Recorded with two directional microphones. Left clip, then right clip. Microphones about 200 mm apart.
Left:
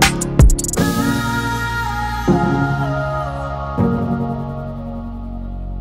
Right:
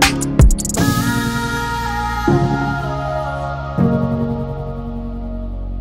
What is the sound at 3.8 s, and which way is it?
Music, centre (ahead or behind).